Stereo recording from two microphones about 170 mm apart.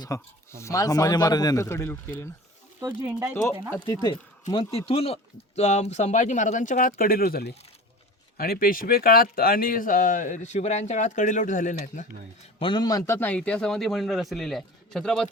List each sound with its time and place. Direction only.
0.0 s a man's voice: 15° left (ahead or behind)
3.0 s speech: 5° right (ahead or behind)
3.8 s a man's voice: 25° left (ahead or behind)
4.9 s speech: 35° left (ahead or behind)
12.5 s a man's voice: 30° left (ahead or behind); by 15.3 s 5° left (ahead or behind)